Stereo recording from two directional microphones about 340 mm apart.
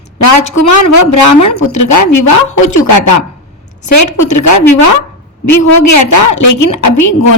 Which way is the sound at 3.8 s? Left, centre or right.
Left.